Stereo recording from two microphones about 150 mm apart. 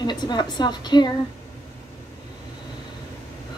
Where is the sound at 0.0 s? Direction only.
30° left (ahead or behind).